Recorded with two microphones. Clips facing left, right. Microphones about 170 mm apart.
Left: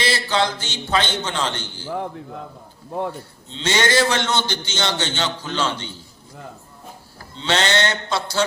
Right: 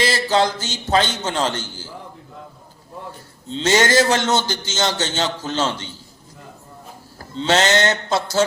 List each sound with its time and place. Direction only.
0.0 s a man's voice: 40° right (ahead or behind)
3.5 s a man's voice: 40° right (ahead or behind)
7.3 s a man's voice: 40° right (ahead or behind)